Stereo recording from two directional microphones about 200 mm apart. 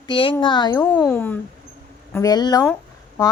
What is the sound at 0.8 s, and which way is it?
A woman's voice, 5° left (ahead or behind).